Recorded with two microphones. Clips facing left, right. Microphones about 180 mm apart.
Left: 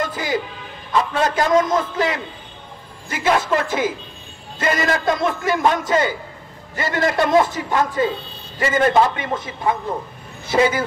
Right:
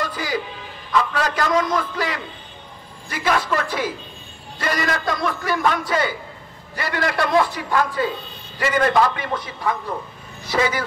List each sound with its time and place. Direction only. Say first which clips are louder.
0.0 s music: left 3 dB; 25° left (ahead or behind)
0.9 s a man's voice: left 2 dB; 25° left (ahead or behind)